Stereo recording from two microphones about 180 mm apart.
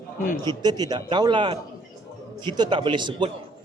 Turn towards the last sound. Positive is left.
turn(degrees=-25)  # may be behind; listen again after turning